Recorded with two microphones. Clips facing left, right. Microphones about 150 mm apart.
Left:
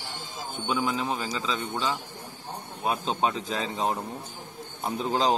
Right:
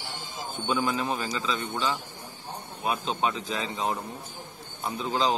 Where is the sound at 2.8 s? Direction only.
30° left (ahead or behind).